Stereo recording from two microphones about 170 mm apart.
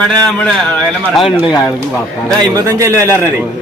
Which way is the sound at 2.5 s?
20° right (ahead or behind).